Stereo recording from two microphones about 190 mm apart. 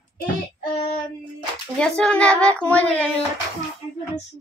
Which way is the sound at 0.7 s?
35° left (ahead or behind).